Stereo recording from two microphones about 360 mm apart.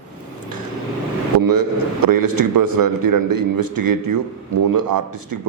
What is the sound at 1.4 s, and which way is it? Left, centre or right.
A man's voice, right.